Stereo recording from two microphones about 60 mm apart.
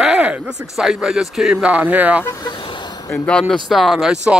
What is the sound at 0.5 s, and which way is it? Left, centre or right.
Speech, centre.